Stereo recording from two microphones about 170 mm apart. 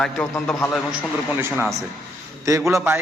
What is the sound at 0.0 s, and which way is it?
Speech, 10° left (ahead or behind).